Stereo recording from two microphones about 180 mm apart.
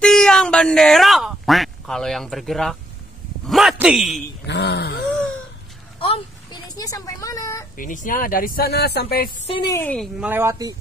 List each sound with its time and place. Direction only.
0.0 s a man's voice: 5° left (ahead or behind)
4.5 s speech: 70° left (ahead or behind)
5.9 s a sound: 30° left (ahead or behind)
7.7 s speech: 45° left (ahead or behind)
9.5 s a woman's voice: 25° left (ahead or behind)
9.8 s a woman's voice: 10° left (ahead or behind)
10.2 s speech: 15° right (ahead or behind)